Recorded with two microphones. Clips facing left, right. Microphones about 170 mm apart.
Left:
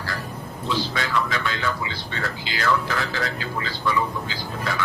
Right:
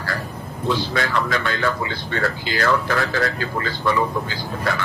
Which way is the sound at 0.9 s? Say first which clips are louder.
Right 3 dB; 50° right (ahead or behind).